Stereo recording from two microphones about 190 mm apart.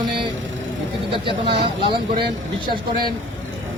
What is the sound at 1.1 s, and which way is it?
Speech, 30° right (ahead or behind).